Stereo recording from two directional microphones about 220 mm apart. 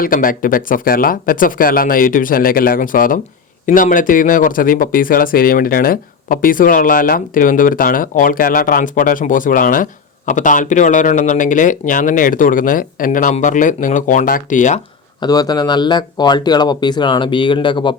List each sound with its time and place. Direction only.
0.0 s speech: 40° left (ahead or behind)
15.2 s speech: 15° left (ahead or behind)